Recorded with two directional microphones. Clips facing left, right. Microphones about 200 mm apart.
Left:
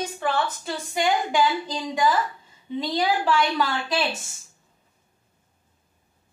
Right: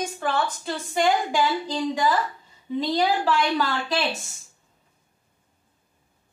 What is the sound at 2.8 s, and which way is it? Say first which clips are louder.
Speech: right 1 dB; centre (ahead or behind).